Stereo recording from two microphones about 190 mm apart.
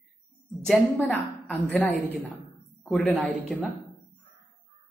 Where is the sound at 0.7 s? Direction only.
Centre (ahead or behind).